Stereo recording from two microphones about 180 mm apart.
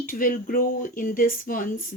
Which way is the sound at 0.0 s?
50° left (ahead or behind).